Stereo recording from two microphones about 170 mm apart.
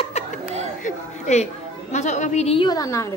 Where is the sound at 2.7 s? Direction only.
20° left (ahead or behind).